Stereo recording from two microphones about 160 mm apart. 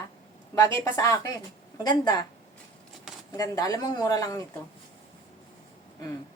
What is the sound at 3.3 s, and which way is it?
Speech, 20° left (ahead or behind).